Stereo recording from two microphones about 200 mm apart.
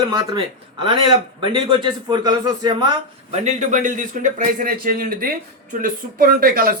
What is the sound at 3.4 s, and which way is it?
Speech, 35° right (ahead or behind).